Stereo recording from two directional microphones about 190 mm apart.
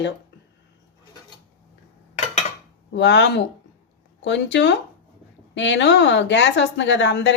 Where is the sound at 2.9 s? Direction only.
70° left (ahead or behind).